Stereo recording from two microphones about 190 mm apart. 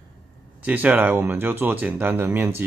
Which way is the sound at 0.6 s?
10° right (ahead or behind).